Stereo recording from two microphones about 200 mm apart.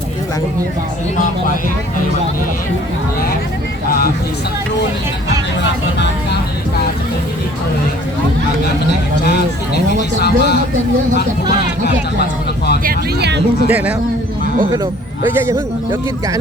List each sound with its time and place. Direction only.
3.8 s speech: 45° left (ahead or behind)
9.7 s speech: 55° left (ahead or behind)
12.8 s speech: 50° right (ahead or behind)
13.7 s speech: 10° right (ahead or behind)
15.3 s speech: 10° right (ahead or behind)